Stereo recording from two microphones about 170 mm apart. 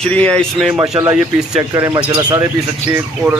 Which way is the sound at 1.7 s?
25° right (ahead or behind).